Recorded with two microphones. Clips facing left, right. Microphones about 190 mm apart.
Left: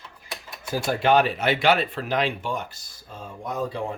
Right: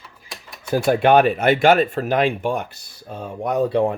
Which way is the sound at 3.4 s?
65° right (ahead or behind).